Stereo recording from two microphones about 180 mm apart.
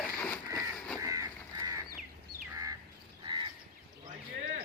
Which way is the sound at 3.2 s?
25° right (ahead or behind).